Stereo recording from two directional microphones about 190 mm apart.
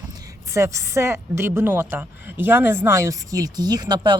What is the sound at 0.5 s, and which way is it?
A woman's voice, 15° right (ahead or behind).